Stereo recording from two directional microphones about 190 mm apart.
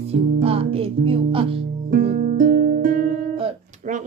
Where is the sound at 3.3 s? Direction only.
30° right (ahead or behind).